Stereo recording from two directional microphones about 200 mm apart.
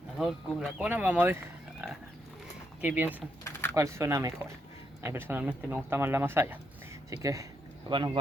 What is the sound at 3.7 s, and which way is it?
Speech, 15° right (ahead or behind).